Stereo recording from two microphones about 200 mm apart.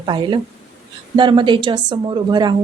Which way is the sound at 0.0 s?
20° right (ahead or behind).